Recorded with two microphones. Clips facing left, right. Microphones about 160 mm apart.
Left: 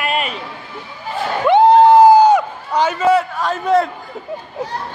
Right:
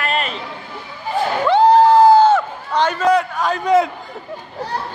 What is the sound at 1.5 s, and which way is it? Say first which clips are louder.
Run: left 3 dB; 20° left (ahead or behind).